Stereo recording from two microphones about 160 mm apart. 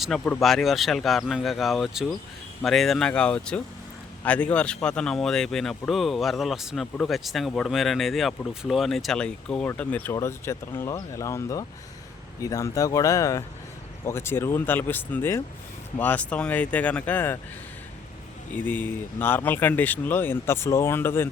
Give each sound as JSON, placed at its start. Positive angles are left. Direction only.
{"t": 0.0, "sound": "a man's voice", "side_deg": 0}
{"t": 18.5, "sound": "a man's voice", "side_deg": 10}